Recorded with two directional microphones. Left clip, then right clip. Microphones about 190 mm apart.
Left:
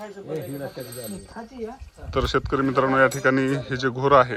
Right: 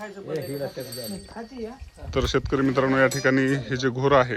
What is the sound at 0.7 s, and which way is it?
Speech, 15° right (ahead or behind).